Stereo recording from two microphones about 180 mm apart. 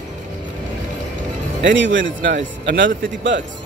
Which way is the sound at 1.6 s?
90° right.